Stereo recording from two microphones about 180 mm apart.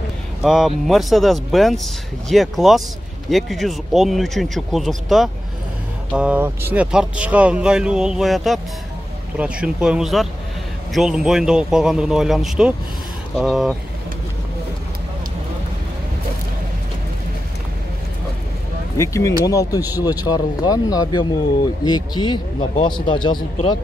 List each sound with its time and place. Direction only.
0.4 s speech: 5° right (ahead or behind)
18.9 s speech: 15° left (ahead or behind)